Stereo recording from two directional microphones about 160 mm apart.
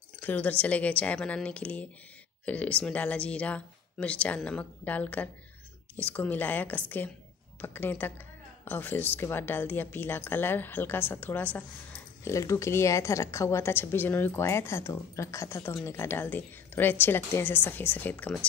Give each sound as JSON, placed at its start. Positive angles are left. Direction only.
{"t": 0.2, "sound": "a woman's voice", "side_deg": 10}